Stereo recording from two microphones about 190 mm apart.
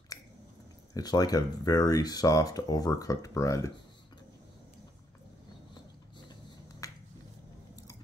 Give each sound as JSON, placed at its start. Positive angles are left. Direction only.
{"t": 0.9, "sound": "speech", "side_deg": 20}
{"t": 6.8, "sound": "finger snapping", "side_deg": 15}